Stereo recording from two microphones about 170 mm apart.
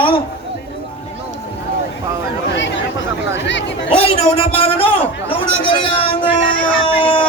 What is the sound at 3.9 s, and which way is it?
A man's voice, 35° left (ahead or behind).